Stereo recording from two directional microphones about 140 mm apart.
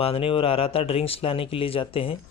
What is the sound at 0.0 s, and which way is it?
Speech, 40° left (ahead or behind).